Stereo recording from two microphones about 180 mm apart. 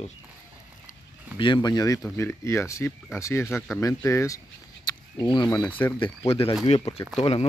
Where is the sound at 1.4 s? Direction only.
25° left (ahead or behind).